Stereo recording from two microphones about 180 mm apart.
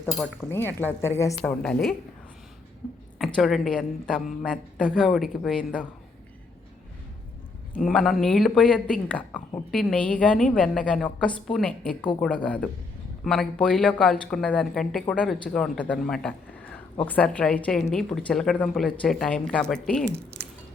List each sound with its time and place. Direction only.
0.0 s speech: centre (ahead or behind)
0.5 s a woman's voice: 10° left (ahead or behind)
1.4 s speech: 5° left (ahead or behind)
3.2 s speech: centre (ahead or behind)
7.7 s a woman's voice: 5° left (ahead or behind)
20.1 s speech: 10° right (ahead or behind)